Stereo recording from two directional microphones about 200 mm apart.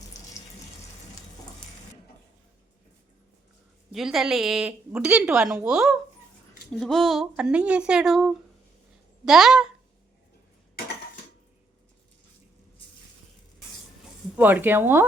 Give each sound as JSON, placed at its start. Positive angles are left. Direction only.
{"t": 0.1, "sound": "water tap", "side_deg": 15}
{"t": 3.9, "sound": "speech", "side_deg": 0}
{"t": 14.3, "sound": "speech", "side_deg": -10}